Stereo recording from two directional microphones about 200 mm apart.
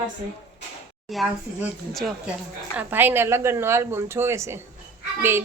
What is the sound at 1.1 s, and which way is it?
Speech, centre (ahead or behind).